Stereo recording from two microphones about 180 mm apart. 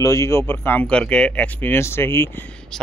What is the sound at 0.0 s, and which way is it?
A man's voice, 15° left (ahead or behind).